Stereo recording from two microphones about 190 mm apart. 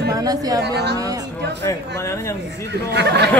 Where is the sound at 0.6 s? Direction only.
60° right (ahead or behind).